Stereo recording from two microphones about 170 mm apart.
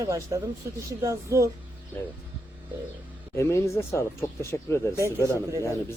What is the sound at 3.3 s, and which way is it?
Speech, 15° left (ahead or behind).